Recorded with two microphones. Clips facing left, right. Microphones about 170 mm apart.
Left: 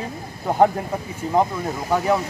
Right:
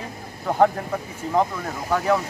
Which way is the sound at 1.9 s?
20° left (ahead or behind).